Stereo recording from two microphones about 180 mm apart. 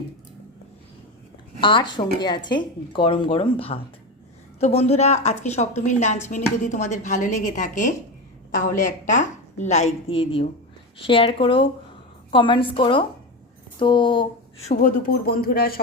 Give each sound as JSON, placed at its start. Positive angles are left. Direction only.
{"t": 1.6, "sound": "a woman's voice", "side_deg": 25}
{"t": 14.7, "sound": "speech", "side_deg": 50}